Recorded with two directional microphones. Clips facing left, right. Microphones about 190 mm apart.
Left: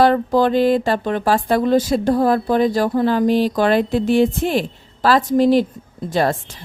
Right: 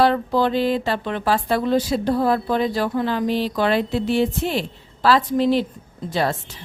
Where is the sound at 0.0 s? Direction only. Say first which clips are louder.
Left 3 dB; 45° left (ahead or behind).